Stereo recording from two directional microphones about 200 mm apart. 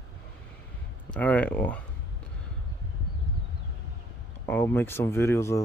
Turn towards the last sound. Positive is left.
turn(degrees=15)  # may be behind; listen again after turning